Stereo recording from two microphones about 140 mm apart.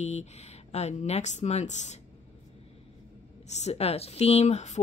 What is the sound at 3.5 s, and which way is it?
A woman's voice, 50° left (ahead or behind).